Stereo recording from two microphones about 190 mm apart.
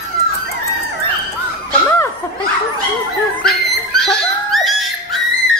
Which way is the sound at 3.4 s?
Centre (ahead or behind).